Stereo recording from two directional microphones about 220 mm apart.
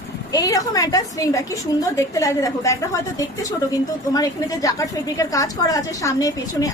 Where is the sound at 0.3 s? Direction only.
15° left (ahead or behind).